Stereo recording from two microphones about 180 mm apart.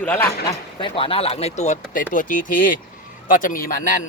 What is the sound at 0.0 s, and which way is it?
Speech, 10° left (ahead or behind).